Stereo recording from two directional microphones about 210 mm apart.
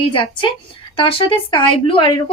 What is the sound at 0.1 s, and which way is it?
A woman's voice, 25° left (ahead or behind).